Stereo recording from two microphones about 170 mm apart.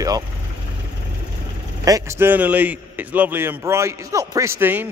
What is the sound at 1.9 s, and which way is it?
A man's voice, 20° right (ahead or behind).